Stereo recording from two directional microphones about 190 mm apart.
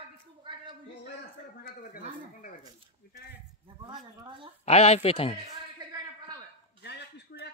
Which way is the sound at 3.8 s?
25° right (ahead or behind).